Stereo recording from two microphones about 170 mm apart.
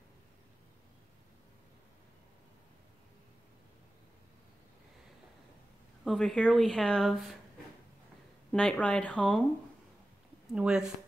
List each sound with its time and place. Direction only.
6.0 s speech: 5° left (ahead or behind)
8.5 s speech: 5° left (ahead or behind)
10.5 s speech: 5° right (ahead or behind)